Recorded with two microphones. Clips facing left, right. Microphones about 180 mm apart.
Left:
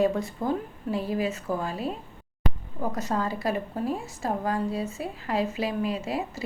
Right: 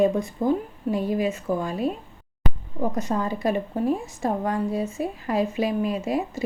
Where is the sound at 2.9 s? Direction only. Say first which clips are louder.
Right 3 dB; 20° right (ahead or behind).